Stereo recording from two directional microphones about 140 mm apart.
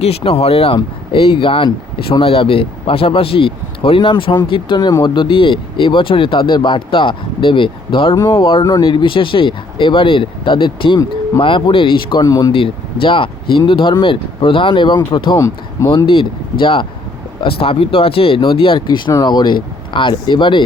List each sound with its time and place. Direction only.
0.0 s speech: 45° left (ahead or behind); by 12.5 s 25° left (ahead or behind)
12.5 s speech: 40° left (ahead or behind)
15.4 s speech: 25° left (ahead or behind)
16.0 s speech: 40° left (ahead or behind)